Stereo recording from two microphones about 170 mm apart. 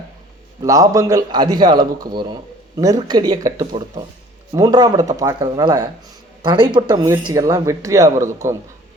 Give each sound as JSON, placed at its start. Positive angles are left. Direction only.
{"t": 0.6, "sound": "a man's voice", "side_deg": -20}